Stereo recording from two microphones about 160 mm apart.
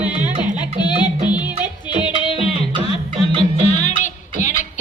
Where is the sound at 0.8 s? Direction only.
30° left (ahead or behind).